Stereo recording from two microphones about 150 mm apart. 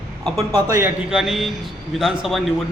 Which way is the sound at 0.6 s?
15° right (ahead or behind).